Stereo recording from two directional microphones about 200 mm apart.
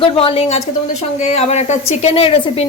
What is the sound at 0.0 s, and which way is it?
A woman's voice, 30° left (ahead or behind).